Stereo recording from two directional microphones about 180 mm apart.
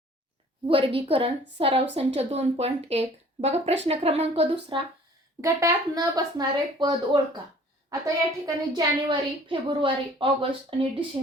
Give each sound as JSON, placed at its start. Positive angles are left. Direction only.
{"t": 0.7, "sound": "speech", "side_deg": -30}
{"t": 5.4, "sound": "a woman's voice", "side_deg": -15}